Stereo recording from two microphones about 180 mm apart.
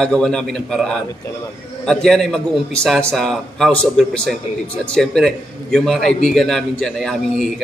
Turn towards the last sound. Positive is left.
turn(degrees=0)  # may be behind; listen again after turning